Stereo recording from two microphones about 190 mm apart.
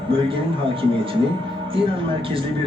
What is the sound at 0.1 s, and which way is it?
A man's voice, 30° right (ahead or behind).